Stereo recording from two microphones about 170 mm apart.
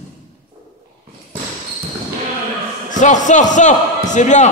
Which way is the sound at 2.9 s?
45° left (ahead or behind).